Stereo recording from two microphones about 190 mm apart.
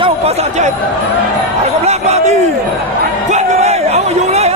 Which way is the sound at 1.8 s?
35° right (ahead or behind).